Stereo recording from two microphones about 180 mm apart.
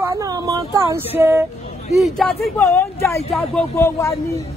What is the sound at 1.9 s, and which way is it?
Speech, centre (ahead or behind).